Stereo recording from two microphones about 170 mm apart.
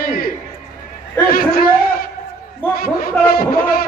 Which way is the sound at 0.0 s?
60° left (ahead or behind).